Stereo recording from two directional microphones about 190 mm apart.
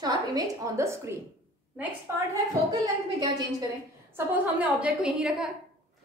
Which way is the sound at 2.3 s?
20° right (ahead or behind).